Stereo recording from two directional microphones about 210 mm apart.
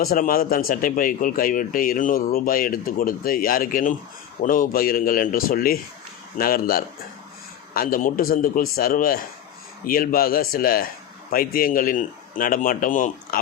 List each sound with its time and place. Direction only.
0.0 s a man's voice: 45° left (ahead or behind)